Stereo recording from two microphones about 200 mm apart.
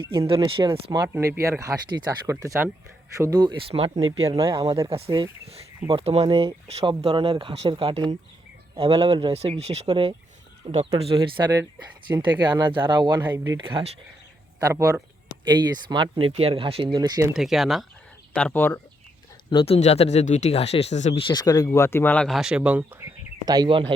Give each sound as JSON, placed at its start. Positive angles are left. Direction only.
{"t": 0.0, "sound": "speech", "side_deg": -25}
{"t": 3.7, "sound": "speech", "side_deg": -30}
{"t": 13.6, "sound": "speech", "side_deg": -25}
{"t": 17.3, "sound": "speech", "side_deg": 0}
{"t": 19.5, "sound": "speech", "side_deg": 25}